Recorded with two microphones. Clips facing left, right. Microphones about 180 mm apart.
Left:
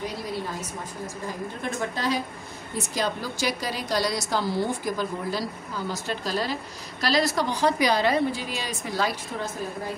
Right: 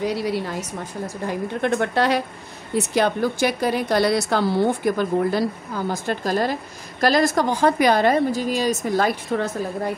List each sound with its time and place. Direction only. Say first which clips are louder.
0.1 s a woman's voice: right 7 dB; 75° right (ahead or behind)